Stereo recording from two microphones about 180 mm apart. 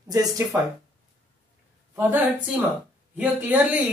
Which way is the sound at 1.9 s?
10° right (ahead or behind).